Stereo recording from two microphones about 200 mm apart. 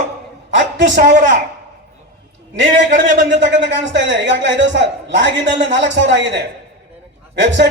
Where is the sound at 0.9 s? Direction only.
40° right (ahead or behind).